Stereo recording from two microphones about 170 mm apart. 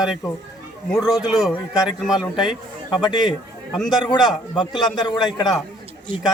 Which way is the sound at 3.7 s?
Centre (ahead or behind).